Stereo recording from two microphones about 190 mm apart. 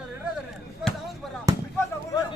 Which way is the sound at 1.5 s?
15° right (ahead or behind).